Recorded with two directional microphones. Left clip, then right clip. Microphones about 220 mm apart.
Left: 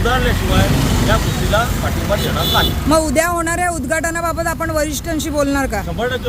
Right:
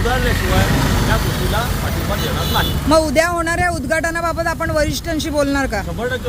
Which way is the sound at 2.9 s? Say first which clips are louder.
Right 2 dB; centre (ahead or behind).